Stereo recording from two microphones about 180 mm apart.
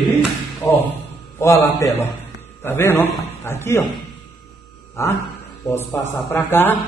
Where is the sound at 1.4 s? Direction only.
15° left (ahead or behind).